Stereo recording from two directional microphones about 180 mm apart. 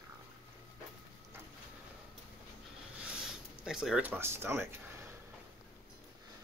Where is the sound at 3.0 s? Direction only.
5° right (ahead or behind).